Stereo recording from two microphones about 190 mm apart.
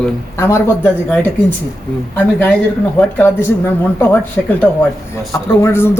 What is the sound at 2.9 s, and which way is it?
Speech, 10° left (ahead or behind).